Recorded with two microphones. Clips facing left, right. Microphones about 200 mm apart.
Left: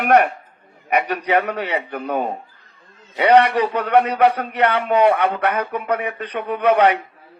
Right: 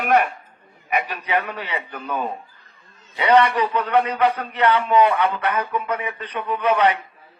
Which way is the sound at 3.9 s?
65° left (ahead or behind).